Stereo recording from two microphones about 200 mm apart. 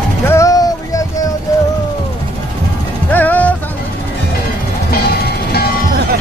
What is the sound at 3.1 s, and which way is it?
Music, 10° left (ahead or behind).